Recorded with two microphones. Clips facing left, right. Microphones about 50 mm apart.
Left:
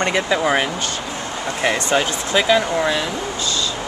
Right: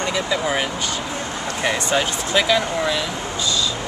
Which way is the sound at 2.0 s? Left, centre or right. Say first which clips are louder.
Left 1 dB; centre.